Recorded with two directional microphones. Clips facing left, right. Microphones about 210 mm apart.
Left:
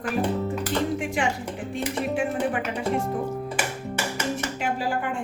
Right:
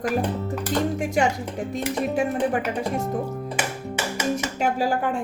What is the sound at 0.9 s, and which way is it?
Music, 40° right (ahead or behind).